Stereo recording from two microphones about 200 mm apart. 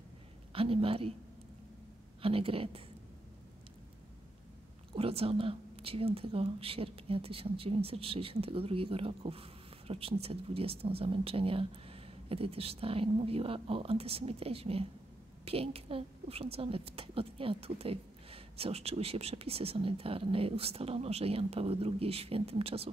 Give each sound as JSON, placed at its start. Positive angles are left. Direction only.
{"t": 0.5, "sound": "a woman's voice", "side_deg": -30}
{"t": 2.2, "sound": "a woman's voice", "side_deg": -30}
{"t": 4.9, "sound": "a woman's voice", "side_deg": -30}